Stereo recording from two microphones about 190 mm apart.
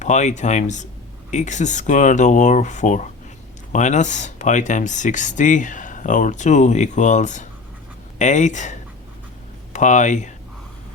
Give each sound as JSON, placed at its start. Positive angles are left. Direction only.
{"t": 0.0, "sound": "speech", "side_deg": 40}